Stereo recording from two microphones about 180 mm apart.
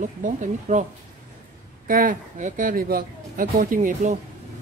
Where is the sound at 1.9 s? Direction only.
50° right (ahead or behind).